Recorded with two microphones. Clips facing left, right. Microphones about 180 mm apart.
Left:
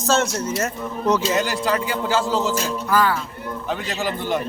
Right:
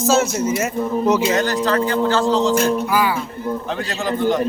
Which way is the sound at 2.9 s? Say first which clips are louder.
Right 1 dB; 10° right (ahead or behind).